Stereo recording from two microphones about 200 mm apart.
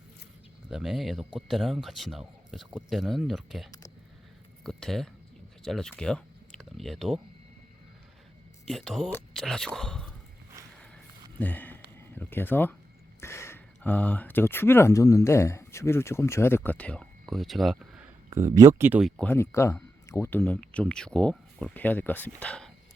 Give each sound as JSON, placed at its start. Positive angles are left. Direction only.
{"t": 0.7, "sound": "speech", "side_deg": 0}
{"t": 8.6, "sound": "speech", "side_deg": 0}
{"t": 11.3, "sound": "a sound", "side_deg": 10}
{"t": 11.9, "sound": "speech", "side_deg": 10}
{"t": 18.3, "sound": "speech", "side_deg": -15}
{"t": 19.2, "sound": "speech", "side_deg": 10}